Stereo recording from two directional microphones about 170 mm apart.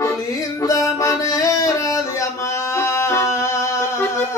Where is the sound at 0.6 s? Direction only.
20° left (ahead or behind).